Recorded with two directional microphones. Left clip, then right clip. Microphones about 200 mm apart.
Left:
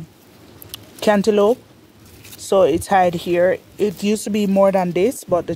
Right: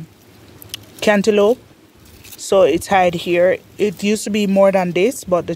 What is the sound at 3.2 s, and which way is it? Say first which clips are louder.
Speech: right 2 dB; 15° right (ahead or behind).